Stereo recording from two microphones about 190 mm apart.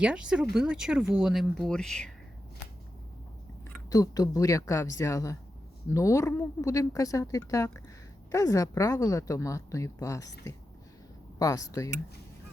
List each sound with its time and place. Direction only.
0.0 s speech: 5° right (ahead or behind)
3.8 s a woman's voice: 20° left (ahead or behind)
11.3 s a woman's voice: 20° left (ahead or behind)